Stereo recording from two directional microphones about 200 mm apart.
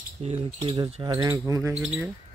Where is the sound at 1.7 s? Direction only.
5° right (ahead or behind).